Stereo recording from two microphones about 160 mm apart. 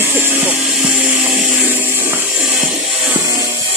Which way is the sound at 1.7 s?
15° right (ahead or behind).